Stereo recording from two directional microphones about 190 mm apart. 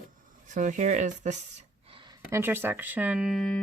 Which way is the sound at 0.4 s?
40° right (ahead or behind).